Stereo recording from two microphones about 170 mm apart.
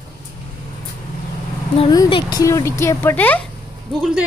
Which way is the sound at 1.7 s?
35° left (ahead or behind).